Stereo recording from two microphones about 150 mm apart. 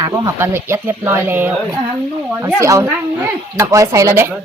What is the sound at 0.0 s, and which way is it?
Speech, 20° right (ahead or behind).